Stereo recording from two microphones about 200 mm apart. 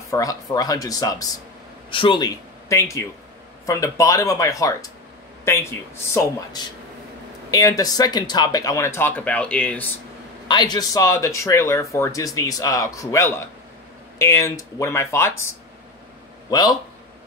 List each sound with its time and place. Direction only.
0.1 s speech: 15° left (ahead or behind)
10.5 s speech: 20° left (ahead or behind)
16.4 s a man's voice: 20° left (ahead or behind)